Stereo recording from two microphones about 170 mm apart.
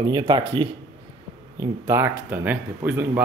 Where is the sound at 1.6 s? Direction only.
15° right (ahead or behind).